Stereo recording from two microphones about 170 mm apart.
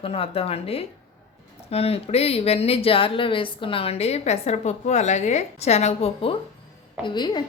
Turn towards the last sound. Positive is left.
turn(degrees=25)  # may be behind; listen again after turning